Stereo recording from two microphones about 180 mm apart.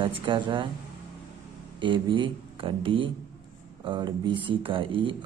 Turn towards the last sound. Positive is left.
turn(degrees=-30)  # may be behind; listen again after turning